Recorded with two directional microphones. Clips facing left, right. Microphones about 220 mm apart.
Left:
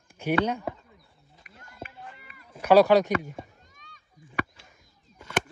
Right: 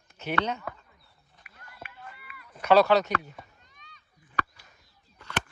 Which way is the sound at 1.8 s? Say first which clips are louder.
Left 2 dB; 45° left (ahead or behind).